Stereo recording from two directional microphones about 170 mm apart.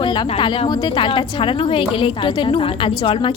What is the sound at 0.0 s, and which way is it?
A woman's voice, 30° left (ahead or behind).